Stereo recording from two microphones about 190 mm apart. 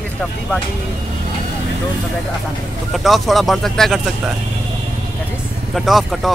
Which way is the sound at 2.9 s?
Centre (ahead or behind).